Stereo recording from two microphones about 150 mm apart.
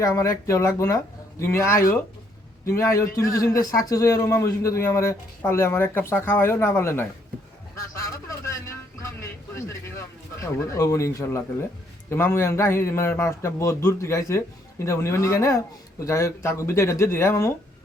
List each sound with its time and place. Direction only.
0.0 s a man's voice: 20° left (ahead or behind)
7.8 s vehicle: 20° left (ahead or behind)
10.4 s a man's voice: 20° left (ahead or behind)